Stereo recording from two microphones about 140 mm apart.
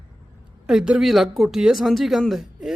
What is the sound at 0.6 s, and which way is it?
Speech, 5° right (ahead or behind).